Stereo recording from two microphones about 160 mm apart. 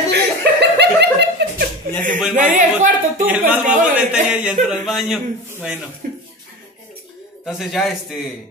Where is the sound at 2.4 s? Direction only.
50° right (ahead or behind).